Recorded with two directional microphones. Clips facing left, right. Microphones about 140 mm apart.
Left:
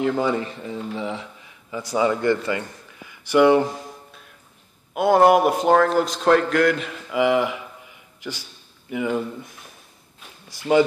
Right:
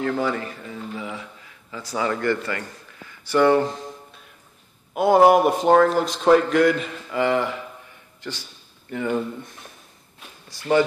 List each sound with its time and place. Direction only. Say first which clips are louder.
0.0 s speech: left 2 dB; 20° left (ahead or behind)
4.9 s a man's voice: right 1 dB; centre (ahead or behind)